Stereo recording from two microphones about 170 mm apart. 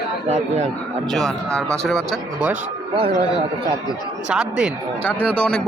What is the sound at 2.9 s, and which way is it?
Speech, 35° right (ahead or behind).